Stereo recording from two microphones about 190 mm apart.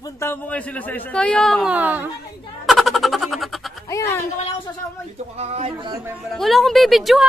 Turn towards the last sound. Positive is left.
turn(degrees=0)  # may be behind; listen again after turning